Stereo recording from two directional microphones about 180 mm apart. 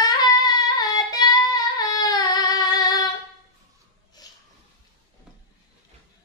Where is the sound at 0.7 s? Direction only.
20° left (ahead or behind).